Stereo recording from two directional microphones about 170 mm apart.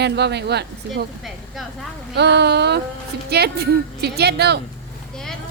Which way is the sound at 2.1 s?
80° right.